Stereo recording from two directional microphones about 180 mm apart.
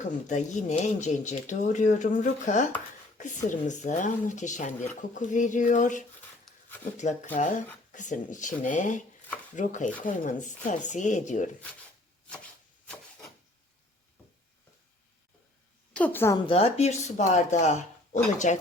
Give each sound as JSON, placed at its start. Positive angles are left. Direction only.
{"t": 0.3, "sound": "speech", "side_deg": 40}
{"t": 6.4, "sound": "a sound", "side_deg": 10}
{"t": 6.9, "sound": "speech", "side_deg": 40}
{"t": 15.9, "sound": "a woman's voice", "side_deg": 10}
{"t": 16.5, "sound": "speech", "side_deg": 35}